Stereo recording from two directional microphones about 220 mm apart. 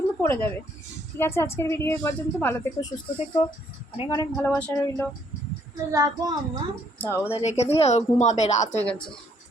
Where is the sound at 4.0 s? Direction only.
15° left (ahead or behind).